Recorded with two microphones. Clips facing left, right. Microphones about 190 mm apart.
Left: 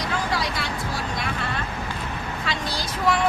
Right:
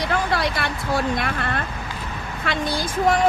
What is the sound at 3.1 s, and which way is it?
Speech, 45° right (ahead or behind).